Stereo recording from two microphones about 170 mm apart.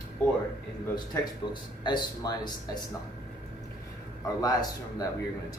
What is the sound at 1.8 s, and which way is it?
Speech, 25° left (ahead or behind).